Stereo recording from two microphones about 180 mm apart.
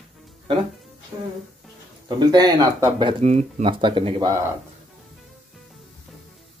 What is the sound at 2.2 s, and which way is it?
Speech, 25° right (ahead or behind).